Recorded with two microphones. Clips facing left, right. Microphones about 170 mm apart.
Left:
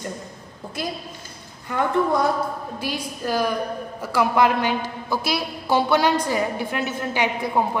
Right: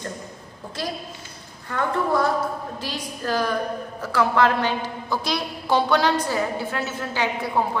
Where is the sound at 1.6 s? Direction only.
15° left (ahead or behind).